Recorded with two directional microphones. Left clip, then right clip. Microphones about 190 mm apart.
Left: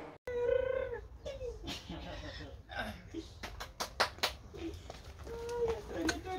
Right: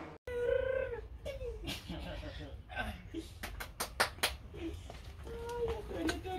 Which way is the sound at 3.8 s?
45° right (ahead or behind).